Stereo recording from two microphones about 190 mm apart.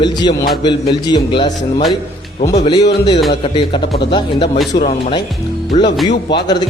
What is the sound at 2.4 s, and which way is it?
Speech, 35° left (ahead or behind).